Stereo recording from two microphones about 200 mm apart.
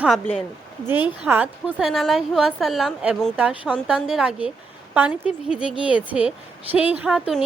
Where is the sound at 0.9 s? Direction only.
10° right (ahead or behind).